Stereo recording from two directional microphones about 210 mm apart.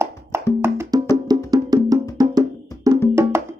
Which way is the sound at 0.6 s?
10° right (ahead or behind).